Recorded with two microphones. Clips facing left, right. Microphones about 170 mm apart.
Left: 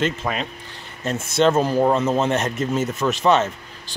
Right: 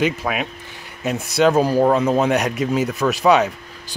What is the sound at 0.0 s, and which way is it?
A man's voice, 10° right (ahead or behind).